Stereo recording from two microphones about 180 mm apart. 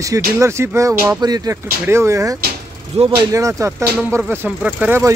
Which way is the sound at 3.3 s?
15° right (ahead or behind).